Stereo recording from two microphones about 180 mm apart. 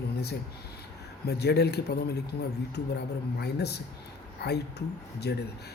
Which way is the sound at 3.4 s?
65° left (ahead or behind).